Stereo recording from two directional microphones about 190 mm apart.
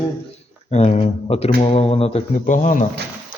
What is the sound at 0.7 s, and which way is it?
Speech, 35° left (ahead or behind).